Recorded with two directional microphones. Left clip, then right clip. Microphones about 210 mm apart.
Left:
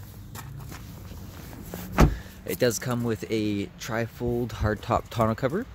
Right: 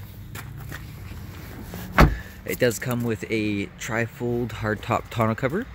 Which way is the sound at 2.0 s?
5° left (ahead or behind).